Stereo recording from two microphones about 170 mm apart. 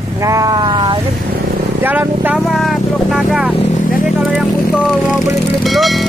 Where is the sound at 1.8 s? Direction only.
10° right (ahead or behind).